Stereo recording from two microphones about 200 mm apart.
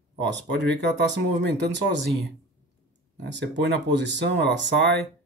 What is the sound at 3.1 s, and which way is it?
Speech, 60° right (ahead or behind).